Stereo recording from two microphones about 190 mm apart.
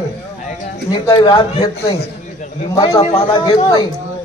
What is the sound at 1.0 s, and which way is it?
A man's voice, 20° left (ahead or behind).